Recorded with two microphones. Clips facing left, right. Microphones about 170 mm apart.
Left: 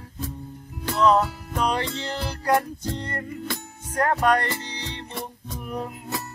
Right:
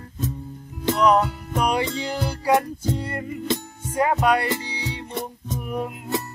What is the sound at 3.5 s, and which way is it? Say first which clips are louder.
Music: right 12 dB; 20° right (ahead or behind).